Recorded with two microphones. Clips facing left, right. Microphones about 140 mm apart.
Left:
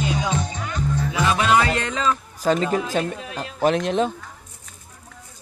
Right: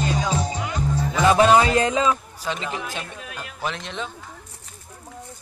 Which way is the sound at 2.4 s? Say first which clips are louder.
Left 9 dB; 45° left (ahead or behind).